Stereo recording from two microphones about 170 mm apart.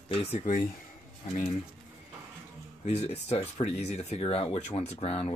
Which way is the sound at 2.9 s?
40° left (ahead or behind).